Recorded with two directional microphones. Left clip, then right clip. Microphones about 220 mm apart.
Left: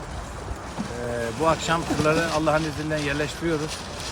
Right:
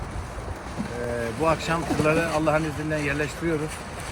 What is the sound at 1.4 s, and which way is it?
Speech, 15° left (ahead or behind).